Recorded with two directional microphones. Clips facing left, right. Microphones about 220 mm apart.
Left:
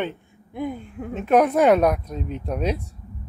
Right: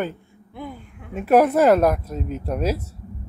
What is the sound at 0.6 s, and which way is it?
Speech, 20° left (ahead or behind).